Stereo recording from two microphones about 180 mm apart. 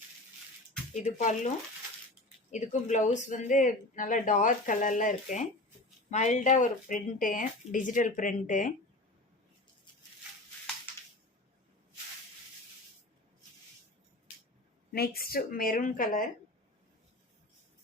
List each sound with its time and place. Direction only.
1.0 s speech: 40° left (ahead or behind)
14.9 s speech: 60° left (ahead or behind)